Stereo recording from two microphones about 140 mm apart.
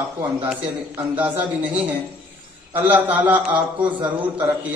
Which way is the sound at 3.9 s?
35° right (ahead or behind).